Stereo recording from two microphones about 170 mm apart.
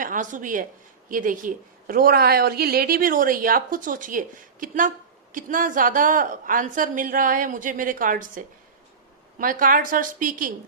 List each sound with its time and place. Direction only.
0.0 s a woman's voice: 50° right (ahead or behind)